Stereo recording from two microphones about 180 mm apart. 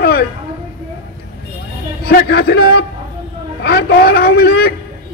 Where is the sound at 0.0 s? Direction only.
60° left (ahead or behind).